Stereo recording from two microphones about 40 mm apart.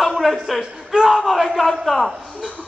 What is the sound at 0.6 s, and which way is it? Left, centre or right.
A man's voice, centre.